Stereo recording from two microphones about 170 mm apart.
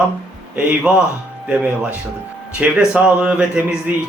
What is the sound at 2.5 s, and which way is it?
A man's voice, 5° right (ahead or behind).